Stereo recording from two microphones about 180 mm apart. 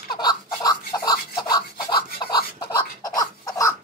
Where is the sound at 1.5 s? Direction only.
25° left (ahead or behind).